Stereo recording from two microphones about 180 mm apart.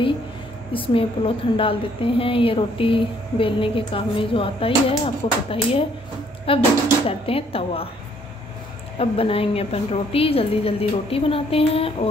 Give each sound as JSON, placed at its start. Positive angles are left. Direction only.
{"t": 0.7, "sound": "a woman's voice", "side_deg": 30}
{"t": 8.9, "sound": "a woman's voice", "side_deg": 30}